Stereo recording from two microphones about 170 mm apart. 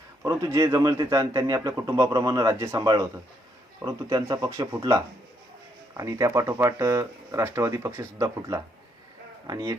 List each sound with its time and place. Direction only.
0.3 s speech: 20° right (ahead or behind)
6.0 s speech: 20° right (ahead or behind)